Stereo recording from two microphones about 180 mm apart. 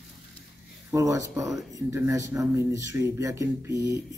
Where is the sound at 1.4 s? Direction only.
Centre (ahead or behind).